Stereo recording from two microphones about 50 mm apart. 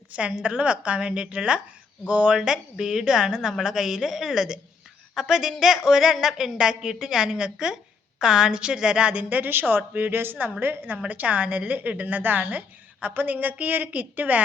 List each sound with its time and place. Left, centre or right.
0.1 s a woman's voice: right
9.4 s a woman's voice: right